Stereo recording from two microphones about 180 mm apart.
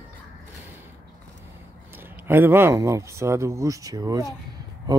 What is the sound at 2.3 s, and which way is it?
Speech, 10° right (ahead or behind).